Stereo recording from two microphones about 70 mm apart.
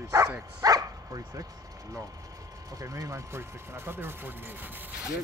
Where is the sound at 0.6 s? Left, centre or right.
Right.